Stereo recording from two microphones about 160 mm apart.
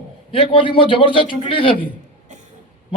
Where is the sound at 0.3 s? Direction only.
35° left (ahead or behind).